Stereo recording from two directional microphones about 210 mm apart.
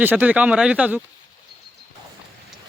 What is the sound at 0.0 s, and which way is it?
Speech, 10° right (ahead or behind).